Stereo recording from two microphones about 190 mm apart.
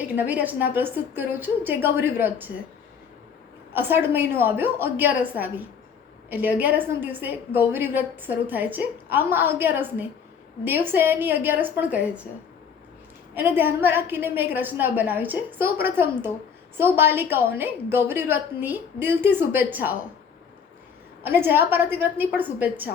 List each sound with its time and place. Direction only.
0.1 s a woman's voice: 10° right (ahead or behind)
3.8 s a woman's voice: 10° right (ahead or behind)
13.3 s a woman's voice: 10° right (ahead or behind)
16.7 s a woman's voice: 10° right (ahead or behind)
21.2 s a woman's voice: 10° right (ahead or behind)